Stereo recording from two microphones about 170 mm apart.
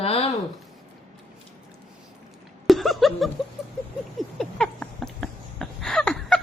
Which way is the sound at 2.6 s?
Centre (ahead or behind).